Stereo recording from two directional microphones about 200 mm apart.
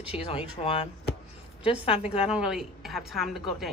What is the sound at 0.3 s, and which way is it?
A woman's voice, 30° left (ahead or behind).